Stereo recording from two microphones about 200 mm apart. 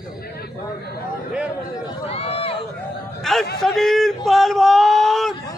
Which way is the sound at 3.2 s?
Centre (ahead or behind).